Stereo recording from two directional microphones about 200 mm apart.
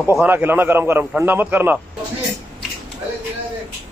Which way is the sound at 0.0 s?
10° right (ahead or behind).